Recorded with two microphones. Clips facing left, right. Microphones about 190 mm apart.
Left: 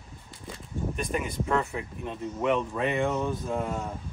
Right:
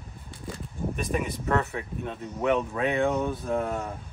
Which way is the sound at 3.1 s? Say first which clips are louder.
Right 1 dB; 10° right (ahead or behind).